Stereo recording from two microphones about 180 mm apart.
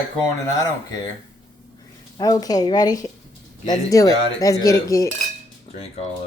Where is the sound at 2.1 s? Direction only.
20° left (ahead or behind).